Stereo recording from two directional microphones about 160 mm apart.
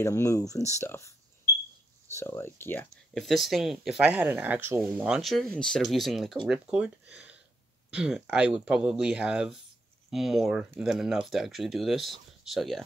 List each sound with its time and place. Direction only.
0.0 s speech: 20° left (ahead or behind)
2.1 s speech: 15° left (ahead or behind)
3.2 s speech: centre (ahead or behind)